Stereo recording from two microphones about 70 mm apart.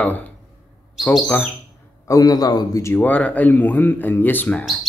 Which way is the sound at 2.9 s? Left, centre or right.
Left.